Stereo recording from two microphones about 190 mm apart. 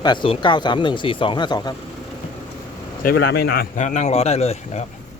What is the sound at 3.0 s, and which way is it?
A man's voice, 50° left (ahead or behind).